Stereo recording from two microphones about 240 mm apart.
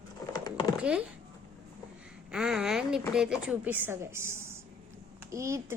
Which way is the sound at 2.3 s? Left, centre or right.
Centre.